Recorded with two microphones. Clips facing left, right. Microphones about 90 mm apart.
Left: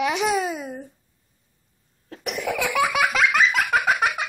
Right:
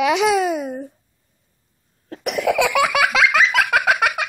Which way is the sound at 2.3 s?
90° right.